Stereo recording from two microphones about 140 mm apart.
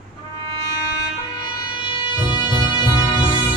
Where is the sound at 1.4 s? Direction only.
35° left (ahead or behind).